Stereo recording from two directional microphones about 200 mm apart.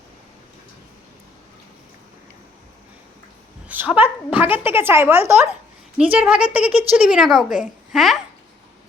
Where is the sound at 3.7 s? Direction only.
10° right (ahead or behind).